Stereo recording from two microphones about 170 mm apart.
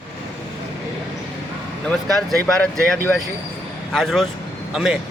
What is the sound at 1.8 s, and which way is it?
Speech, centre (ahead or behind).